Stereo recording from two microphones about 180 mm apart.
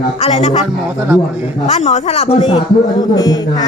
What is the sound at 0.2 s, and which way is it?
Speech, 35° left (ahead or behind).